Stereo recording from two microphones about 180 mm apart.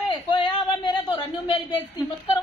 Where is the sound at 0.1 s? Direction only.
25° left (ahead or behind).